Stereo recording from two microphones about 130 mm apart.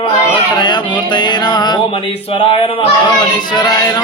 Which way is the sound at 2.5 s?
45° left (ahead or behind).